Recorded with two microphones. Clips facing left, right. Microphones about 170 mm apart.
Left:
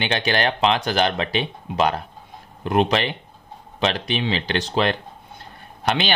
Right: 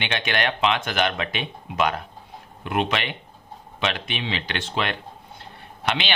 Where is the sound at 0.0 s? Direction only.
35° left (ahead or behind).